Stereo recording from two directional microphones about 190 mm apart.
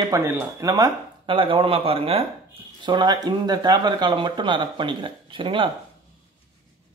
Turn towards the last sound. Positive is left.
turn(degrees=-25)  # may be behind; listen again after turning